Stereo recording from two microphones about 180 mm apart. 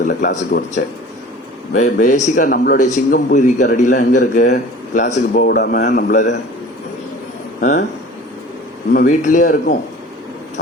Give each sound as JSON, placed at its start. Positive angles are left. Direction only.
{"t": 0.2, "sound": "a man's voice", "side_deg": 45}
{"t": 5.3, "sound": "a man's voice", "side_deg": 55}
{"t": 7.6, "sound": "a man's voice", "side_deg": 45}
{"t": 8.9, "sound": "a man's voice", "side_deg": 50}